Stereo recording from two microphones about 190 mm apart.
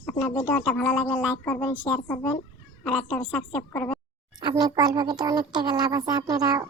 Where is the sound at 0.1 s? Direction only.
10° left (ahead or behind).